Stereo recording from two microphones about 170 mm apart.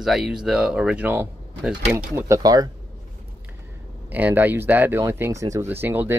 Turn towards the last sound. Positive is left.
turn(degrees=-10)  # may be behind; listen again after turning